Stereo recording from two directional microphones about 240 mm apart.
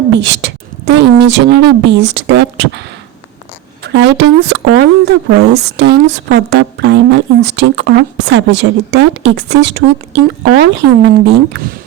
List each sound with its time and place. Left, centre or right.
0.1 s speech: right
3.8 s speech: right